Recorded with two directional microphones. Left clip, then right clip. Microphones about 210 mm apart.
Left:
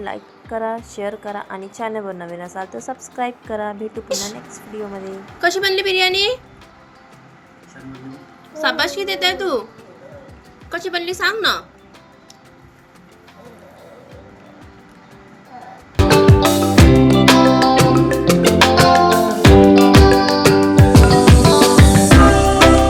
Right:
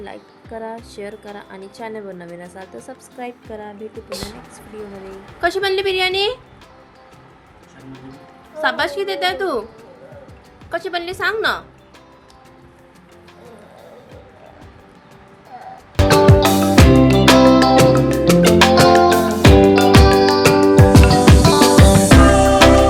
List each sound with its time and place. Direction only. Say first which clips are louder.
0.0 s a woman's voice: left 6 dB; centre (ahead or behind)
4.1 s a woman's voice: left 7 dB; 15° right (ahead or behind)
5.4 s a woman's voice: left 1 dB; 15° right (ahead or behind)
8.5 s a woman's voice: even; 10° right (ahead or behind)
10.7 s a woman's voice: even; 15° right (ahead or behind)
16.0 s music: even; centre (ahead or behind)